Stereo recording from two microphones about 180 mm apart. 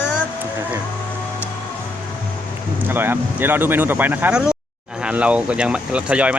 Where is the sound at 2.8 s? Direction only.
10° right (ahead or behind).